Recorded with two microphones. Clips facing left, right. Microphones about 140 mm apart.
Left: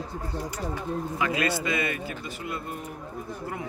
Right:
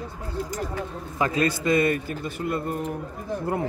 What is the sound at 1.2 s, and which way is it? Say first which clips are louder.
A man's voice: right 5 dB; 40° right (ahead or behind).